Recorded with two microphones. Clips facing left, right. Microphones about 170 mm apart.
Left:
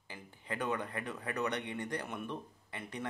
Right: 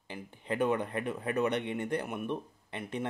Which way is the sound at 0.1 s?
20° right (ahead or behind).